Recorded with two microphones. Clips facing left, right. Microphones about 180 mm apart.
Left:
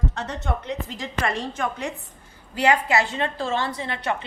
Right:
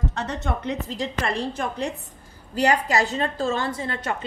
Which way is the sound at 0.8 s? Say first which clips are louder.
Right 1 dB; 35° right (ahead or behind).